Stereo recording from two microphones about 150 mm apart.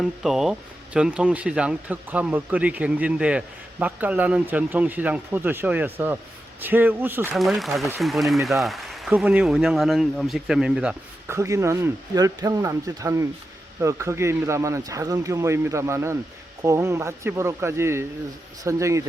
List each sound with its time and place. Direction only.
0.0 s speech: centre (ahead or behind)
7.3 s speech: centre (ahead or behind)
11.3 s speech: 20° right (ahead or behind)